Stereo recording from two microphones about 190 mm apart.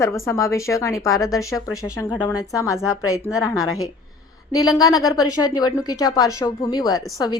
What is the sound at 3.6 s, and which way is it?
Speech, 90° left.